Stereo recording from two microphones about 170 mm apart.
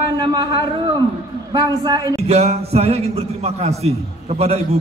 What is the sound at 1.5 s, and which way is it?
Speech, 20° right (ahead or behind).